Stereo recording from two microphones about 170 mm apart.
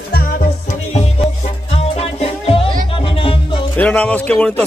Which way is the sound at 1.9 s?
35° left (ahead or behind).